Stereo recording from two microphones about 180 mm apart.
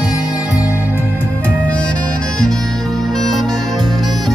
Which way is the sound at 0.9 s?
15° left (ahead or behind).